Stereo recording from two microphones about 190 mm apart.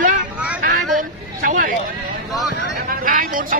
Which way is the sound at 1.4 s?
45° right (ahead or behind).